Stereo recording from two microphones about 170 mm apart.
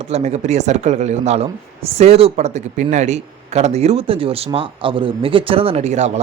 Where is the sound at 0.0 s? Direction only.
40° right (ahead or behind).